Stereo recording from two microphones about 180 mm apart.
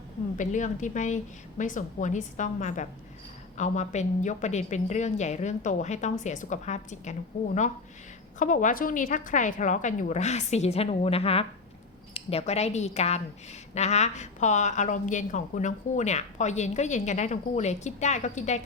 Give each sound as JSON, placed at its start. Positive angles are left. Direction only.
{"t": 0.3, "sound": "a woman's voice", "side_deg": 45}